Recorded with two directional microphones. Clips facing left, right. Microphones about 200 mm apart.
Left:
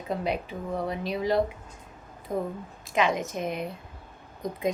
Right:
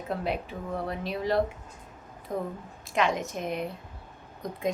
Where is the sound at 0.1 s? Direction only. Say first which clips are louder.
Left 2 dB; centre (ahead or behind).